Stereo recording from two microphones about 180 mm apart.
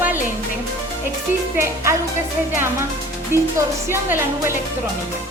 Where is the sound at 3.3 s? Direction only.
15° right (ahead or behind).